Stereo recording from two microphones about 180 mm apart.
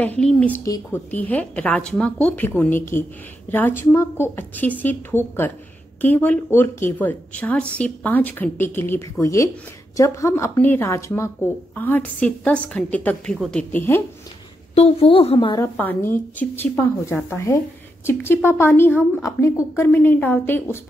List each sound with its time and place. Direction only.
0.2 s speech: 5° left (ahead or behind)
0.7 s a woman's voice: 20° left (ahead or behind)
1.1 s speech: 10° left (ahead or behind)
14.8 s a woman's voice: 35° left (ahead or behind)
15.8 s speech: 10° left (ahead or behind)